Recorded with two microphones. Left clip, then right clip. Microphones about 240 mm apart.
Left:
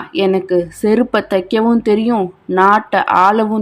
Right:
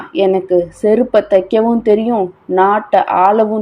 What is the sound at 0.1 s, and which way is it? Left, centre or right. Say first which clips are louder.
Speech: right 2 dB; centre.